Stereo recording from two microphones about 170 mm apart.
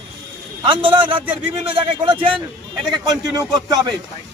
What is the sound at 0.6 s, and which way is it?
A man's voice, 30° right (ahead or behind).